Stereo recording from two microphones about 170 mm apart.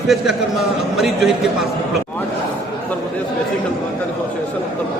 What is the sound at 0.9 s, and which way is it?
Speech, centre (ahead or behind).